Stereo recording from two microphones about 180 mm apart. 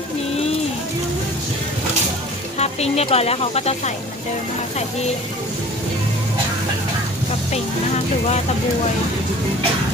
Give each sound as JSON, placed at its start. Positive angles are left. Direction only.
{"t": 2.6, "sound": "speech", "side_deg": 35}